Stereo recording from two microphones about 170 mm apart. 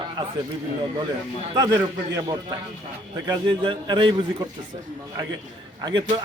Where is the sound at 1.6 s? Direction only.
20° right (ahead or behind).